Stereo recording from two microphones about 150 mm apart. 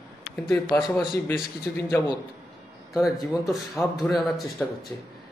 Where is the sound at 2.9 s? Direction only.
5° right (ahead or behind).